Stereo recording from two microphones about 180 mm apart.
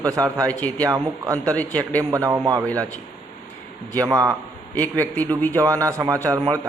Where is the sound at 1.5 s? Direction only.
10° left (ahead or behind).